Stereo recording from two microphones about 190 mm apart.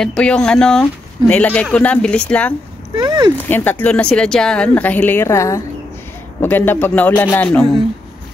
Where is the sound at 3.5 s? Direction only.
10° left (ahead or behind).